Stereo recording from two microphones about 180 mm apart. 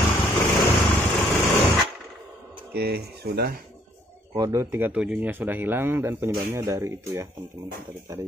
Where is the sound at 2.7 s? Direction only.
60° right (ahead or behind).